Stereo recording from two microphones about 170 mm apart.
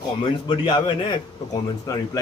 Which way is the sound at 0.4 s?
25° left (ahead or behind).